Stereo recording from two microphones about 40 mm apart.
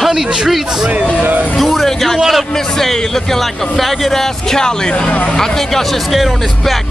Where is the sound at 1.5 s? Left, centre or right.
Centre.